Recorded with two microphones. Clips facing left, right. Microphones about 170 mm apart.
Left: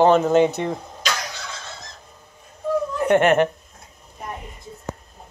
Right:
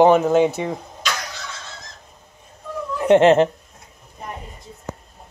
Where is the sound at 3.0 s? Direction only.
25° right (ahead or behind).